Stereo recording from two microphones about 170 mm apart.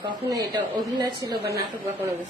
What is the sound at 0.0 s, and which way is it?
A woman's voice, 25° right (ahead or behind).